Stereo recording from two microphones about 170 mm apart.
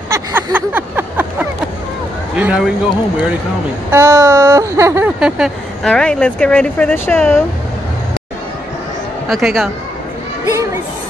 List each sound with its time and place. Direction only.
0.1 s a sound: 15° right (ahead or behind)
2.3 s speech: 5° right (ahead or behind)
3.9 s speech: 15° right (ahead or behind); by 7.3 s 10° left (ahead or behind)
9.3 s speech: centre (ahead or behind)
10.4 s speech: 15° right (ahead or behind)